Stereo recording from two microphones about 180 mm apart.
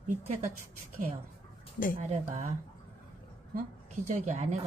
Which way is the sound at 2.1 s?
35° right (ahead or behind).